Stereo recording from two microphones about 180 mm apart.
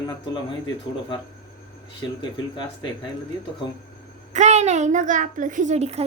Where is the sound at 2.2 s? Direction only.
25° left (ahead or behind).